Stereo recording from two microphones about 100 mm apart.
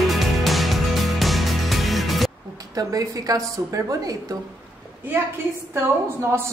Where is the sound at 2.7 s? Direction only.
35° right (ahead or behind).